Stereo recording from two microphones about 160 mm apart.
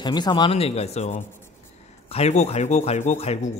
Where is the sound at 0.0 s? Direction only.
25° left (ahead or behind).